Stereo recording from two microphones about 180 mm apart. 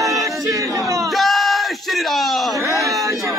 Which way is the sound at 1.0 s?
Centre (ahead or behind).